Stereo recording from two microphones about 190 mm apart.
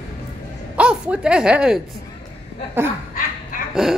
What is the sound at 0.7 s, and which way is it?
A woman's voice, 5° right (ahead or behind).